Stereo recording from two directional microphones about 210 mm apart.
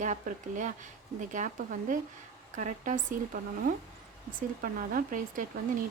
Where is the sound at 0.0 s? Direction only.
35° right (ahead or behind).